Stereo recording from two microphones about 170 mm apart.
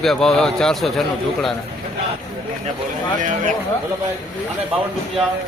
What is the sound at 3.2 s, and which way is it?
Speech, 50° right (ahead or behind).